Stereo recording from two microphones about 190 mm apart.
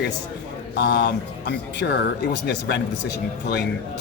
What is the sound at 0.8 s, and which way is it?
Speech, 60° left (ahead or behind).